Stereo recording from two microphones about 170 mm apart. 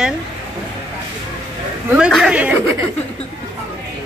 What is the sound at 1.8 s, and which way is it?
Speech, 5° right (ahead or behind).